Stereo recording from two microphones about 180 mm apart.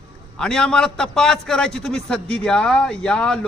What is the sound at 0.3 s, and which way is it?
A man's voice, 5° left (ahead or behind).